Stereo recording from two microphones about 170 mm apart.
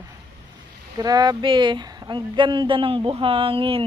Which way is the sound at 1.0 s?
20° right (ahead or behind).